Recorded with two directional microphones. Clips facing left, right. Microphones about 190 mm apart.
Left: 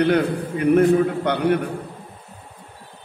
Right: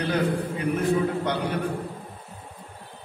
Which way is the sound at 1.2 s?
60° left (ahead or behind).